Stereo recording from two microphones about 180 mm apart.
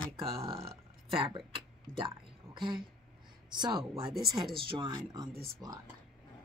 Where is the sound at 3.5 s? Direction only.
25° right (ahead or behind).